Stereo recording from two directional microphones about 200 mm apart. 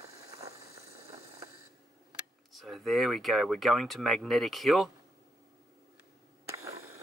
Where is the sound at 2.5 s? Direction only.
Centre (ahead or behind).